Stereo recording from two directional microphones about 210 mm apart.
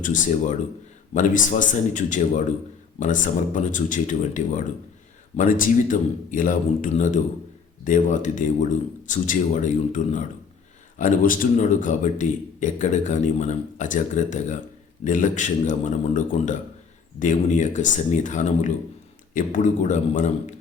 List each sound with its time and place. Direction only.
0.0 s speech: 35° left (ahead or behind)